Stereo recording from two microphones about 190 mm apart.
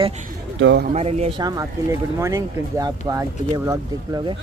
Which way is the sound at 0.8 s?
35° right (ahead or behind).